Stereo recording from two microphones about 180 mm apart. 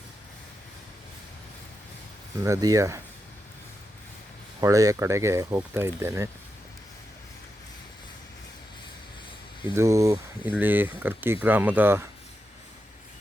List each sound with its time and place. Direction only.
2.4 s speech: 20° right (ahead or behind)
4.6 s speech: 20° right (ahead or behind)
9.7 s speech: 15° right (ahead or behind)